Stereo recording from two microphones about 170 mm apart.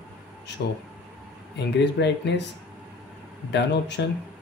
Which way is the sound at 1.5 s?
85° left.